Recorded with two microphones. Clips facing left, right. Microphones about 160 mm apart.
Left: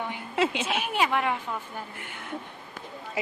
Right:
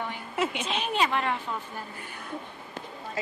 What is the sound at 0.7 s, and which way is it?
Speech, 10° left (ahead or behind).